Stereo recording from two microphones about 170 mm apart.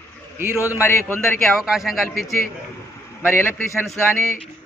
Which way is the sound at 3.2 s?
15° left (ahead or behind).